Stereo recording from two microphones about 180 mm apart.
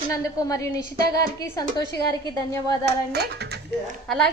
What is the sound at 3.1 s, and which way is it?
Speech, 65° right (ahead or behind).